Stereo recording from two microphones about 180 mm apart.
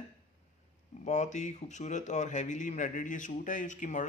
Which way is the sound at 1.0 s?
40° left (ahead or behind).